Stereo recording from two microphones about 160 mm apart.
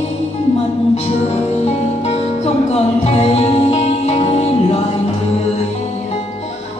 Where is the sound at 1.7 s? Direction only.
40° left (ahead or behind).